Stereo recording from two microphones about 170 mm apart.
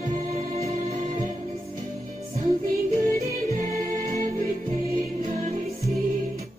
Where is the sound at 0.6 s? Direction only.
40° right (ahead or behind).